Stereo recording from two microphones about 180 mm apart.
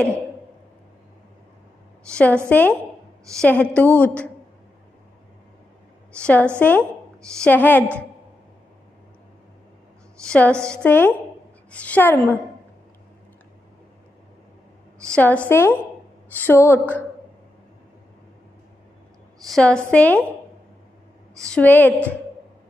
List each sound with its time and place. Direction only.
2.1 s a woman's voice: 5° left (ahead or behind)
6.1 s a woman's voice: 5° left (ahead or behind)
10.2 s a woman's voice: 5° left (ahead or behind)
15.0 s a woman's voice: 5° left (ahead or behind)
19.5 s a woman's voice: 5° left (ahead or behind)
21.5 s a woman's voice: 10° left (ahead or behind)